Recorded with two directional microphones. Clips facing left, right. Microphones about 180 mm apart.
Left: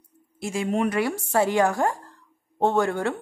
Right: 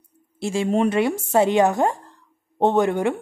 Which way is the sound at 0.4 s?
30° right (ahead or behind).